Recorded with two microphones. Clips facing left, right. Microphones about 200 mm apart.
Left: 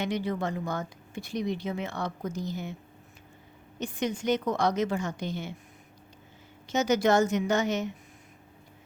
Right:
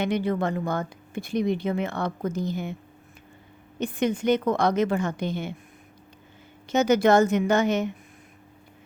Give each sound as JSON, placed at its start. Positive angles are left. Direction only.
{"t": 0.0, "sound": "speech", "side_deg": -55}
{"t": 3.8, "sound": "speech", "side_deg": -55}
{"t": 6.7, "sound": "speech", "side_deg": -55}